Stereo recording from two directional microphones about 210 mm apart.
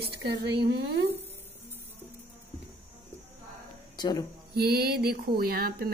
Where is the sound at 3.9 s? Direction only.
20° left (ahead or behind).